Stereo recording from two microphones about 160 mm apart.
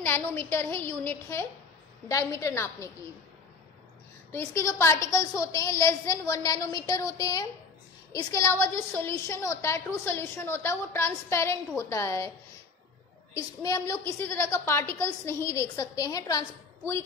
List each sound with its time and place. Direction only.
0.0 s a woman's voice: 15° left (ahead or behind)
4.3 s a woman's voice: 15° left (ahead or behind)
13.3 s a woman's voice: 20° left (ahead or behind)